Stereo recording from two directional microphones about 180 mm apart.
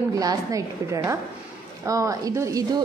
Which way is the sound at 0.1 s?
20° right (ahead or behind).